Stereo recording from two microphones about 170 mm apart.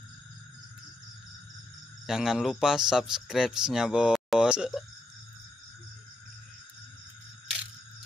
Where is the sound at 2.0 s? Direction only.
Centre (ahead or behind).